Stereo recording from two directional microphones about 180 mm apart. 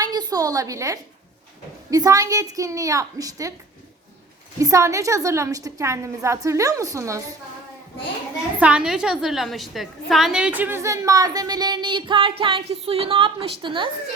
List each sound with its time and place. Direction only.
0.0 s a woman's voice: 20° right (ahead or behind)
4.6 s a woman's voice: 15° right (ahead or behind)
8.5 s a woman's voice: 5° right (ahead or behind); by 13.9 s 25° right (ahead or behind)